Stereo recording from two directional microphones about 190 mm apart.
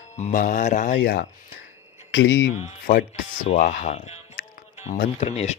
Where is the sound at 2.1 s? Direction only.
75° left (ahead or behind).